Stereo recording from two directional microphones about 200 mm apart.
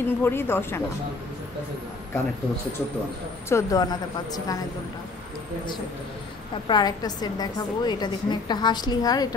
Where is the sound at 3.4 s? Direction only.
15° left (ahead or behind).